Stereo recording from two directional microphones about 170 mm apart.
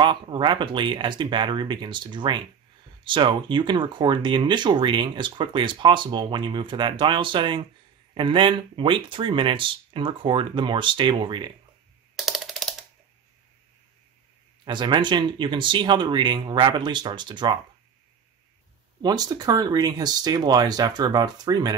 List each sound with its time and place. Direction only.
0.0 s speech: 30° right (ahead or behind)
12.2 s a sound: centre (ahead or behind)
14.6 s speech: 30° right (ahead or behind)
18.9 s speech: 25° right (ahead or behind)